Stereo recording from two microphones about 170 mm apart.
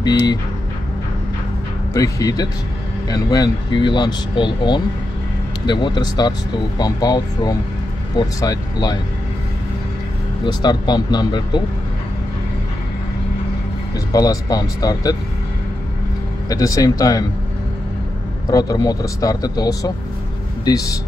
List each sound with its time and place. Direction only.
0.0 s speech: 25° left (ahead or behind)
2.0 s speech: 20° left (ahead or behind)
10.4 s speech: 25° left (ahead or behind)
14.1 s speech: 20° left (ahead or behind)
16.4 s speech: 20° left (ahead or behind)
18.5 s speech: 20° left (ahead or behind)